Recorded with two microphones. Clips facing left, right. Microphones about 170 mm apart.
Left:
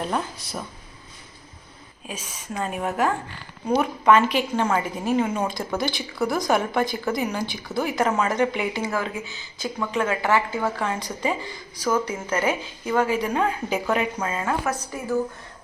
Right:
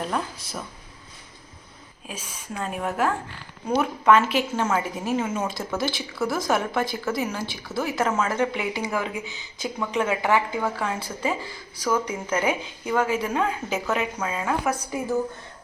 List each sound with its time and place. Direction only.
0.0 s speech: centre (ahead or behind)
2.0 s a woman's voice: centre (ahead or behind)
14.6 s a woman's voice: 15° right (ahead or behind)